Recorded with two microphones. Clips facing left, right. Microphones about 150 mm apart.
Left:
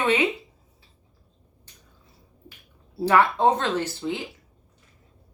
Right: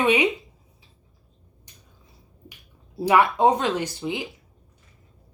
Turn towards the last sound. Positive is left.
turn(degrees=-15)  # may be behind; listen again after turning